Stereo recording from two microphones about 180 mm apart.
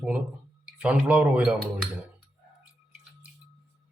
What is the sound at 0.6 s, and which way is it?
Speech, 5° right (ahead or behind).